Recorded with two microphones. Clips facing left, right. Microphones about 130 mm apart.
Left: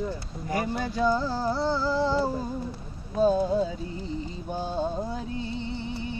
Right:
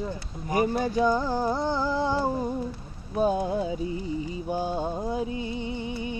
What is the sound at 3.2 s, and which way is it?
Mantra, 15° right (ahead or behind).